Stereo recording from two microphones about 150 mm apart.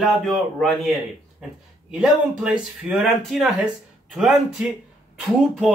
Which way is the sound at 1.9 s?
5° right (ahead or behind).